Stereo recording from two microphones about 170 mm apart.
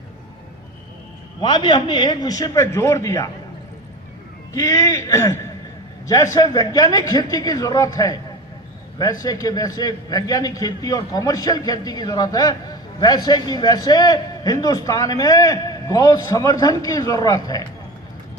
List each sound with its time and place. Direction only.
1.4 s a man's voice: 25° left (ahead or behind)
4.5 s a man's voice: 20° left (ahead or behind)